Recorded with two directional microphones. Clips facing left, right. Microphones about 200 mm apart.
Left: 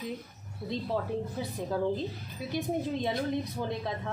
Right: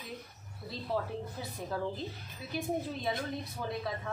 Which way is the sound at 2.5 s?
20° left (ahead or behind).